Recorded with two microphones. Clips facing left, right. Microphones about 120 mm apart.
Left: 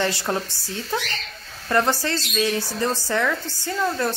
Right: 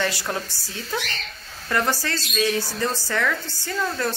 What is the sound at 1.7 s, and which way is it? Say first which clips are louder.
Speech: left 3 dB; 20° left (ahead or behind).